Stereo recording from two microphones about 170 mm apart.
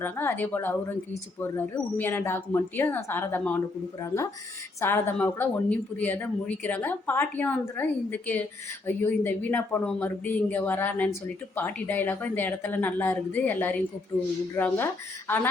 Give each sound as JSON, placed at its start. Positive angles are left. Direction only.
{"t": 0.0, "sound": "speech", "side_deg": 10}